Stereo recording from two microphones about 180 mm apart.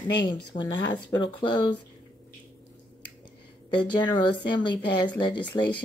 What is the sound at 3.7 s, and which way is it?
Speech, 25° left (ahead or behind).